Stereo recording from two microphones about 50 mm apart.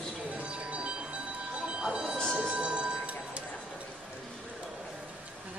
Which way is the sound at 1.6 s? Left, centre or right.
Centre.